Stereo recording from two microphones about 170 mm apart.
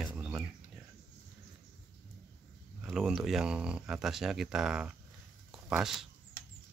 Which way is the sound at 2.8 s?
5° right (ahead or behind).